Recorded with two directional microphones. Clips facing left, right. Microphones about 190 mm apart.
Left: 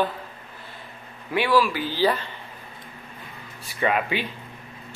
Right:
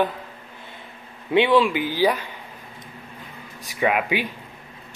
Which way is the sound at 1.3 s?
25° right (ahead or behind).